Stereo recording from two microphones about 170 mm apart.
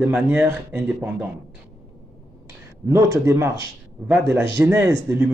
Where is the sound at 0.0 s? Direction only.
10° right (ahead or behind).